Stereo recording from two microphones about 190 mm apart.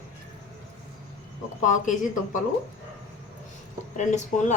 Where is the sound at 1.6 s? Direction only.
40° left (ahead or behind).